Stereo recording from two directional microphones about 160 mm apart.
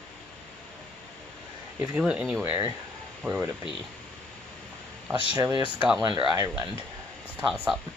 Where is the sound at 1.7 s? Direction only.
5° right (ahead or behind).